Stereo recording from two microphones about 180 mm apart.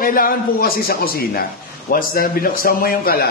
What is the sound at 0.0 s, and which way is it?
A man's voice, 50° left (ahead or behind).